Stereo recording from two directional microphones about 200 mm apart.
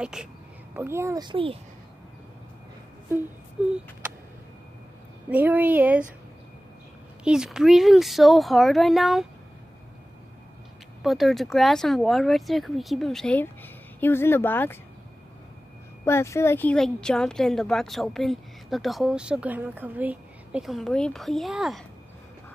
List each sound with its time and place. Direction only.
0.0 s a child's voice: 5° right (ahead or behind); by 1.6 s 25° right (ahead or behind)
3.6 s speech: 5° right (ahead or behind)
5.3 s speech: 10° right (ahead or behind)
7.2 s speech: 5° right (ahead or behind)
11.0 s speech: centre (ahead or behind)
16.1 s speech: 15° left (ahead or behind)